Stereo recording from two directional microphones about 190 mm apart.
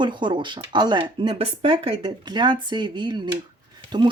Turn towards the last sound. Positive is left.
turn(degrees=-20)  # may be behind; listen again after turning